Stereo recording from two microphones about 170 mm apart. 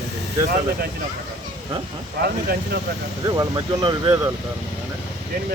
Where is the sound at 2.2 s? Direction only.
70° right (ahead or behind).